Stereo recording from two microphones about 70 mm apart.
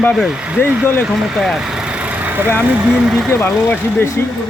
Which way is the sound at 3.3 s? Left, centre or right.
Left.